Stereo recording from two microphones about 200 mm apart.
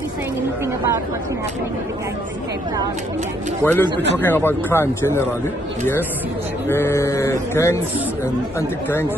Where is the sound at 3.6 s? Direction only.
10° left (ahead or behind).